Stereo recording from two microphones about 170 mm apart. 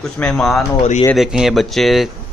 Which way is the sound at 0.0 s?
5° left (ahead or behind).